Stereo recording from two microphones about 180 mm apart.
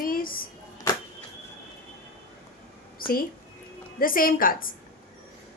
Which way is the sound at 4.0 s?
50° left (ahead or behind).